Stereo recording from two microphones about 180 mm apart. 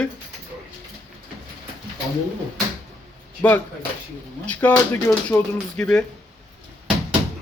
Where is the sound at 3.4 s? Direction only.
10° left (ahead or behind).